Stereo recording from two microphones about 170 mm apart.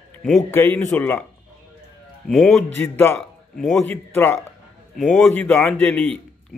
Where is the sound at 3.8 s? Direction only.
10° left (ahead or behind).